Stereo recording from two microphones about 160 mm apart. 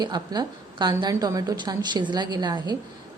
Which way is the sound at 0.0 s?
25° right (ahead or behind).